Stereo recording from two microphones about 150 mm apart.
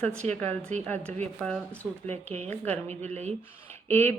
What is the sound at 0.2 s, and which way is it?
Speech, 45° right (ahead or behind).